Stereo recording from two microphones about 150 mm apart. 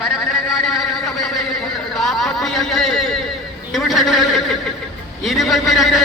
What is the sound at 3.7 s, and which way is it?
A man's voice, centre (ahead or behind).